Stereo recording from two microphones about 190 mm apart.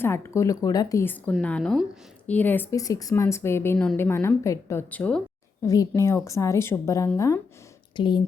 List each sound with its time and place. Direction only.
0.0 s speech: 15° left (ahead or behind)
5.6 s speech: 20° left (ahead or behind)